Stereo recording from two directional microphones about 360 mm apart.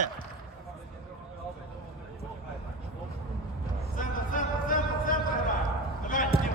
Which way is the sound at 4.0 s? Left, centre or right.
Left.